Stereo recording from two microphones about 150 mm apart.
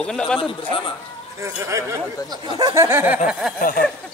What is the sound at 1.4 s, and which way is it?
Speech, 20° right (ahead or behind).